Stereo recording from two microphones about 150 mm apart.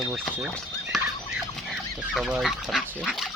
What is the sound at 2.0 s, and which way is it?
Speech, 5° right (ahead or behind).